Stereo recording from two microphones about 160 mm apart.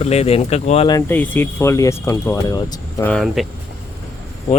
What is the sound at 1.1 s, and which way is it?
Speech, 10° left (ahead or behind).